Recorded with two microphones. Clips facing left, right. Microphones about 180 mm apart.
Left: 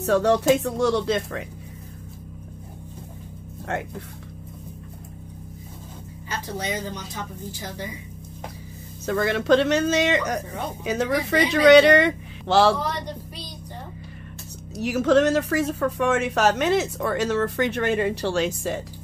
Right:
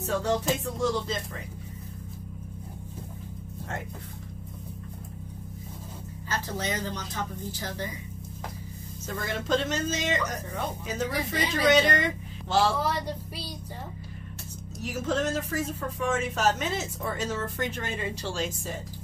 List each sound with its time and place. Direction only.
0.0 s speech: 70° left (ahead or behind)
6.2 s speech: 10° left (ahead or behind)
9.0 s speech: 75° left (ahead or behind)
12.8 s speech: 5° right (ahead or behind)
14.8 s speech: 75° left (ahead or behind)